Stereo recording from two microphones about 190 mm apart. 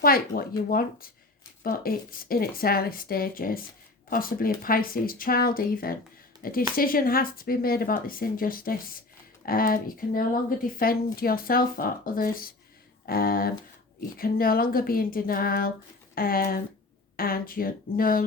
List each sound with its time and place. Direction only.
0.0 s a woman's voice: 50° left (ahead or behind)